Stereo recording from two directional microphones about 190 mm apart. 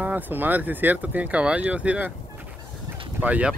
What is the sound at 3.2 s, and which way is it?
Speech, 10° right (ahead or behind).